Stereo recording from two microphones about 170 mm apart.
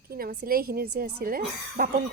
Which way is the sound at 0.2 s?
60° right (ahead or behind).